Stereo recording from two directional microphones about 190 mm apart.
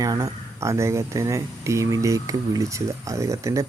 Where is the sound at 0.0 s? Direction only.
20° right (ahead or behind).